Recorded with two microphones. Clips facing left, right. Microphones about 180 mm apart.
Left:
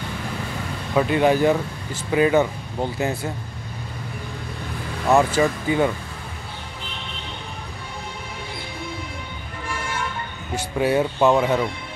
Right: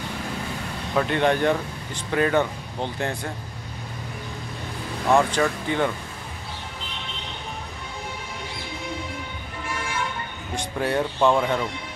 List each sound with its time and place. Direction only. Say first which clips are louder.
0.9 s speech: left 3 dB; 5° left (ahead or behind)
5.1 s speech: left 2 dB; 5° left (ahead or behind)
10.5 s speech: left 4 dB; 5° left (ahead or behind)